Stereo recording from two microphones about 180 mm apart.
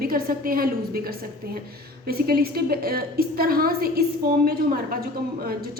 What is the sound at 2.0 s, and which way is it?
A woman's voice, 55° right (ahead or behind).